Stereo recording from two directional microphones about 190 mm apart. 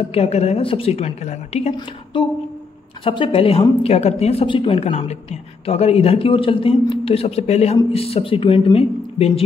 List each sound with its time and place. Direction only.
0.1 s a woman's voice: 35° left (ahead or behind)
3.0 s a woman's voice: 30° left (ahead or behind)